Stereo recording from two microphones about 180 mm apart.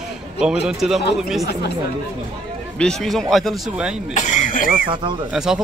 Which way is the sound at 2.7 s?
5° left (ahead or behind).